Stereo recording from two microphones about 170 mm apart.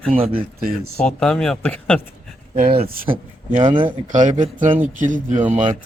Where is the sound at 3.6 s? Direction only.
30° right (ahead or behind).